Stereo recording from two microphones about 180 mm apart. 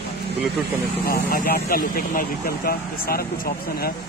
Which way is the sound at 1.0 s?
55° left (ahead or behind).